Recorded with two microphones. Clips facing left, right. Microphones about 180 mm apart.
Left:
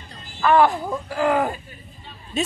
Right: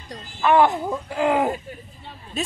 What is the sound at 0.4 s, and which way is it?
Speech, 20° right (ahead or behind).